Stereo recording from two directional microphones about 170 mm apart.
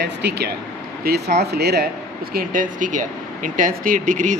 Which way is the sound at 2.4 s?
50° right (ahead or behind).